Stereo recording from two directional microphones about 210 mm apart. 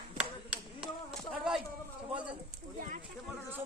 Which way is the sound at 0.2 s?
5° right (ahead or behind).